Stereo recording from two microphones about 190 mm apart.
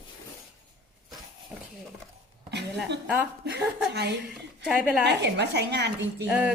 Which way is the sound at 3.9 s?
60° right (ahead or behind).